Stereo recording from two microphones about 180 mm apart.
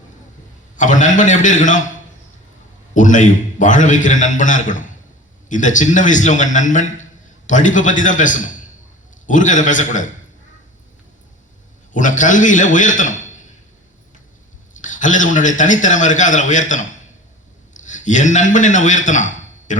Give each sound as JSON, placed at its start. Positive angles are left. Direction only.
{"t": 0.8, "sound": "a man's voice", "side_deg": 45}
{"t": 2.9, "sound": "a man's voice", "side_deg": 45}
{"t": 11.9, "sound": "a man's voice", "side_deg": 45}
{"t": 14.8, "sound": "a man's voice", "side_deg": 45}